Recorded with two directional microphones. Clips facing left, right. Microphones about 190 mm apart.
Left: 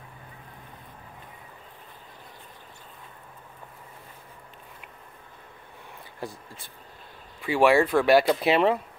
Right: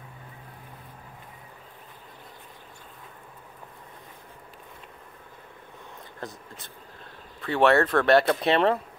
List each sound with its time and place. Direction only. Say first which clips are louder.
7.4 s speech: left 1 dB; 5° left (ahead or behind)